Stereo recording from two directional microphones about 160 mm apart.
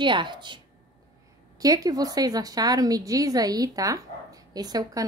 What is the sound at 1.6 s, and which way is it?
A woman's voice, 25° right (ahead or behind).